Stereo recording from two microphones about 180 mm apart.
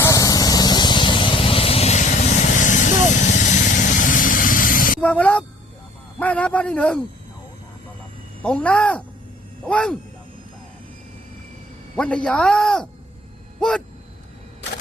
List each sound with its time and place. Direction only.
0.0 s vehicle: 20° left (ahead or behind); by 4.9 s 50° left (ahead or behind)
4.9 s a man's voice: 10° left (ahead or behind)
8.4 s a man's voice: 5° left (ahead or behind)
11.9 s speech: 5° left (ahead or behind)